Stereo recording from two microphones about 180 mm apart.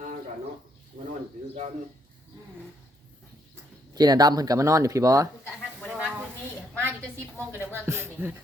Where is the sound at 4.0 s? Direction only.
20° right (ahead or behind).